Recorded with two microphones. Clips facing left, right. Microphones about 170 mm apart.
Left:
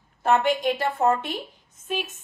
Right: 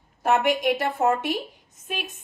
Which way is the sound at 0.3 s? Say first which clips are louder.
Even; 10° right (ahead or behind).